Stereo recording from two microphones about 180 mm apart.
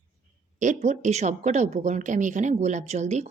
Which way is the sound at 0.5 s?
40° right (ahead or behind).